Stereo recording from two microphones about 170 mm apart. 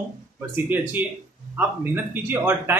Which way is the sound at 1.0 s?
10° right (ahead or behind).